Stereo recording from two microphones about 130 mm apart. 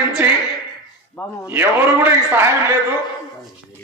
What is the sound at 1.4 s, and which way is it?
A man's voice, 15° right (ahead or behind).